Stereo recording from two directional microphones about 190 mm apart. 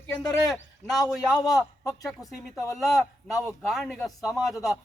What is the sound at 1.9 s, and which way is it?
Speech, 20° left (ahead or behind).